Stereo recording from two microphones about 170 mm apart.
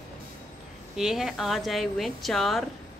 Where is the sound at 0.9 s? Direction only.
Centre (ahead or behind).